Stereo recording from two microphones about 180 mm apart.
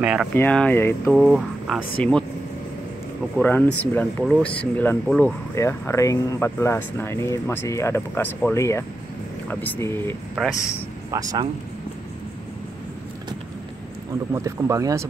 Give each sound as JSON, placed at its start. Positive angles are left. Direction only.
{"t": 0.0, "sound": "speech", "side_deg": -5}
{"t": 0.3, "sound": "speech", "side_deg": 10}
{"t": 1.1, "sound": "speech", "side_deg": 0}
{"t": 3.3, "sound": "speech", "side_deg": 10}
{"t": 11.1, "sound": "speech", "side_deg": -20}
{"t": 14.3, "sound": "speech", "side_deg": -15}